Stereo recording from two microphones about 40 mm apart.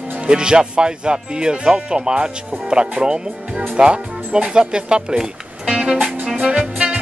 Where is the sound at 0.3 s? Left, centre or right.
Right.